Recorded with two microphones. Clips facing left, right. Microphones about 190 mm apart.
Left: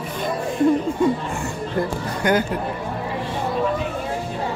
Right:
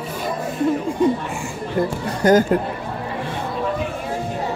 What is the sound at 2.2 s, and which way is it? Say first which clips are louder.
Speech: right 5 dB; 40° right (ahead or behind).